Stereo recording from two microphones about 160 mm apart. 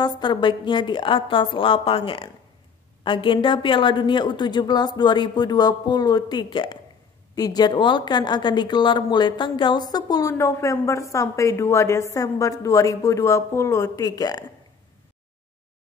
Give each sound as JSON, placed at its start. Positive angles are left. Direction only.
{"t": 0.2, "sound": "a woman's voice", "side_deg": 30}